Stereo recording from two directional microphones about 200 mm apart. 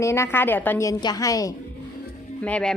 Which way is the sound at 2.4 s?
5° left (ahead or behind).